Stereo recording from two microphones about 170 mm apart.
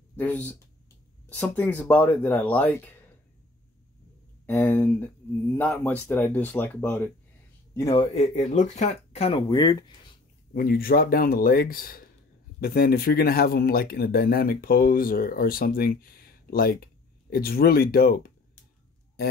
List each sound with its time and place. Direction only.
0.1 s speech: 10° left (ahead or behind)
4.5 s speech: 15° left (ahead or behind)
7.9 s speech: 35° left (ahead or behind)
9.5 s speech: 25° left (ahead or behind)
10.5 s speech: 60° left (ahead or behind)